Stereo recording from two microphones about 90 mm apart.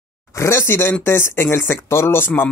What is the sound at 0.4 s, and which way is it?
Speech, 30° left (ahead or behind).